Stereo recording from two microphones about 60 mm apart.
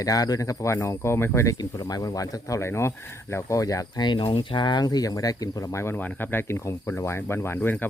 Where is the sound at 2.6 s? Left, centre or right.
Left.